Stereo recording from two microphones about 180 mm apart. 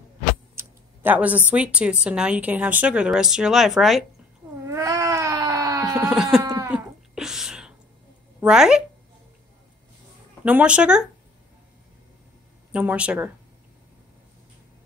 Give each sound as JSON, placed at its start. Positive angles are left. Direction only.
{"t": 0.6, "sound": "a sound", "side_deg": -10}
{"t": 1.5, "sound": "speech", "side_deg": -5}
{"t": 4.6, "sound": "baby cry", "side_deg": -15}
{"t": 6.0, "sound": "speech", "side_deg": -5}
{"t": 6.4, "sound": "cat", "side_deg": -20}
{"t": 6.7, "sound": "a sound", "side_deg": 0}
{"t": 8.4, "sound": "speech", "side_deg": -5}
{"t": 10.4, "sound": "speech", "side_deg": -5}
{"t": 12.7, "sound": "speech", "side_deg": -5}